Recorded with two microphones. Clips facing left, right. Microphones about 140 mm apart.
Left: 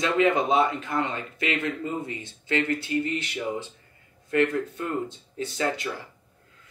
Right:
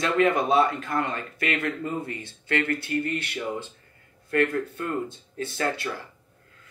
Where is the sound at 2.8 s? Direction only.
55° right (ahead or behind).